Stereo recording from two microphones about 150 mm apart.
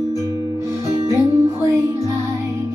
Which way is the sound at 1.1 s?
20° right (ahead or behind).